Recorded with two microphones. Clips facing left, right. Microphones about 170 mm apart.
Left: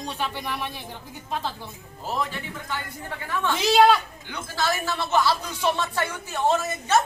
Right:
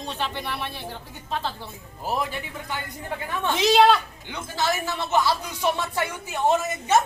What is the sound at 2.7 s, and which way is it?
Speech, 15° right (ahead or behind).